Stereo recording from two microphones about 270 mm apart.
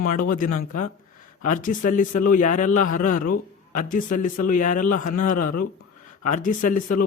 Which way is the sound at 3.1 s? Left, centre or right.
Left.